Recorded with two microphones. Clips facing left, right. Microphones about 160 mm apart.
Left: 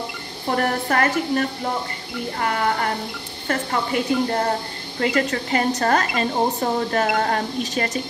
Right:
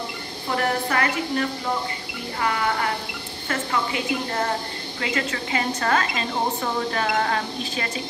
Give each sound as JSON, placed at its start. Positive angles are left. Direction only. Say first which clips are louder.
{"t": 0.6, "sound": "a woman's voice", "louder": "left 2 dB", "side_deg": 45}